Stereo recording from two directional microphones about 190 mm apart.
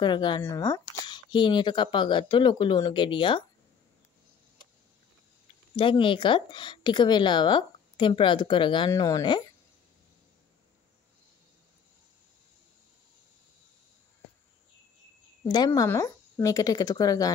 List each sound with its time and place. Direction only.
0.0 s a woman's voice: 25° left (ahead or behind)
5.8 s a woman's voice: 25° left (ahead or behind)
15.4 s a woman's voice: 20° left (ahead or behind)